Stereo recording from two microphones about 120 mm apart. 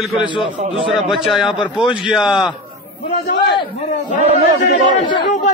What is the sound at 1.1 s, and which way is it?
Speech, centre (ahead or behind).